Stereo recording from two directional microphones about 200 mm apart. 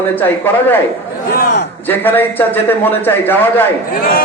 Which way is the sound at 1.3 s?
55° left (ahead or behind).